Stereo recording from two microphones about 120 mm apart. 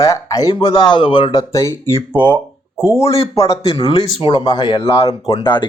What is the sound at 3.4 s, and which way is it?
Speech, 45° left (ahead or behind).